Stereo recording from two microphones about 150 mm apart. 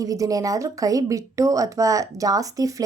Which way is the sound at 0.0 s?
25° right (ahead or behind).